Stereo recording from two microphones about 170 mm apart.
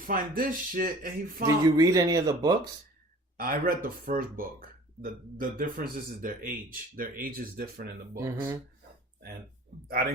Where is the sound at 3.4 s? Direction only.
60° right (ahead or behind).